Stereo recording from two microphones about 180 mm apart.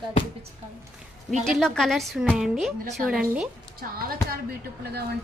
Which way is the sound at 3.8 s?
50° right (ahead or behind).